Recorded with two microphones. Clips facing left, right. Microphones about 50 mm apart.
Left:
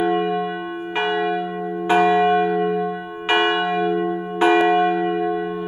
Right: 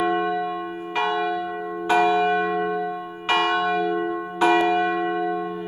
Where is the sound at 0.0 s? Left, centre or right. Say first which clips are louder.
Left 2 dB; left.